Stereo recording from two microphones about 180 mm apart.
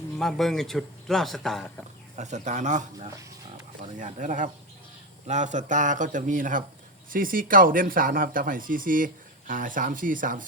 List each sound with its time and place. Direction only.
0.2 s speech: centre (ahead or behind)
2.1 s speech: 40° right (ahead or behind)